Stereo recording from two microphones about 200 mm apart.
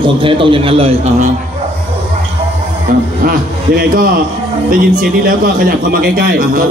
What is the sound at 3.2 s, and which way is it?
A man's voice, 45° right (ahead or behind).